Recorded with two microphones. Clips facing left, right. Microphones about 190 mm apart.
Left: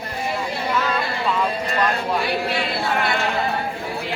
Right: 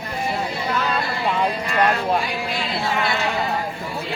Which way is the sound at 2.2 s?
65° left (ahead or behind).